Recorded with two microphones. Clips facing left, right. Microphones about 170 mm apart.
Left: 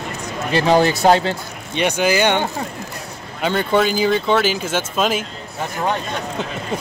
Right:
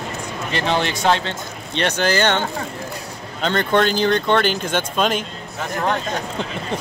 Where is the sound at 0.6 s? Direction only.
40° left (ahead or behind).